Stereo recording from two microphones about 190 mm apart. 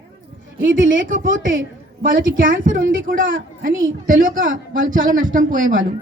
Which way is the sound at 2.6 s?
45° right (ahead or behind).